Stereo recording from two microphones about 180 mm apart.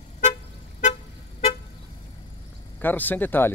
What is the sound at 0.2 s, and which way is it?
Vehicle, 40° left (ahead or behind).